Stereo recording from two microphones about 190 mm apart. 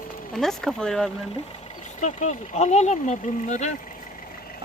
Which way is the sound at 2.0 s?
40° left (ahead or behind).